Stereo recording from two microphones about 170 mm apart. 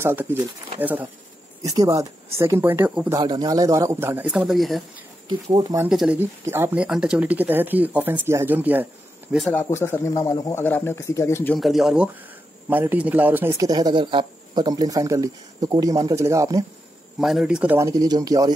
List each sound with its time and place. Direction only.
0.0 s speech: 15° right (ahead or behind)
1.6 s speech: 20° right (ahead or behind)
3.2 s speech: 25° right (ahead or behind); by 4.8 s centre (ahead or behind)
5.3 s a man's voice: 25° right (ahead or behind)
5.9 s speech: 5° right (ahead or behind)
9.3 s speech: centre (ahead or behind)
9.6 s speech: 15° left (ahead or behind)
11.5 s a man's voice: centre (ahead or behind); by 16.6 s 20° right (ahead or behind)
17.2 s speech: centre (ahead or behind)
17.7 s a man's voice: 20° right (ahead or behind)